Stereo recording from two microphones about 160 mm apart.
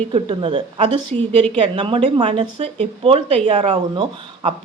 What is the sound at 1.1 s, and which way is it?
Speech, 40° right (ahead or behind).